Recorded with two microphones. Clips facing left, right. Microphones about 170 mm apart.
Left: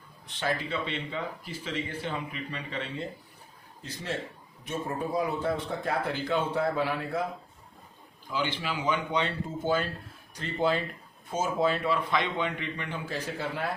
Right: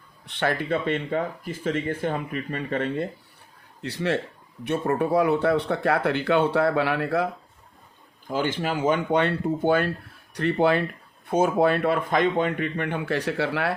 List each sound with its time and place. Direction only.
0.3 s speech: 60° right (ahead or behind)
3.8 s speech: 70° right (ahead or behind)
8.3 s a man's voice: 50° right (ahead or behind); by 13.7 s 75° right (ahead or behind)